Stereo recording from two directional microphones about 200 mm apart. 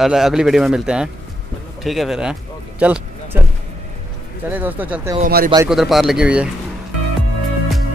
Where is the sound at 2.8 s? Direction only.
5° right (ahead or behind).